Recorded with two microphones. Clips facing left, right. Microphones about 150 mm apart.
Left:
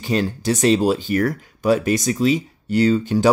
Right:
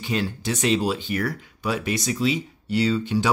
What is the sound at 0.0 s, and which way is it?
Speech, 40° left (ahead or behind).